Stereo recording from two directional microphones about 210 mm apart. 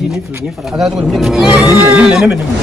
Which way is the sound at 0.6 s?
Centre (ahead or behind).